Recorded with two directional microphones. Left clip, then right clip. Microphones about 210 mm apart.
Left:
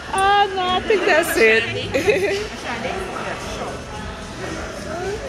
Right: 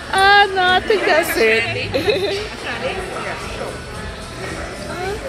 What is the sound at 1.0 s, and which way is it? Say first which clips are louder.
A woman's voice: even; 5° left (ahead or behind).